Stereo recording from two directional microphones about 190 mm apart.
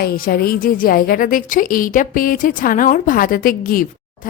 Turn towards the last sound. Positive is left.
turn(degrees=50)  # may be behind; listen again after turning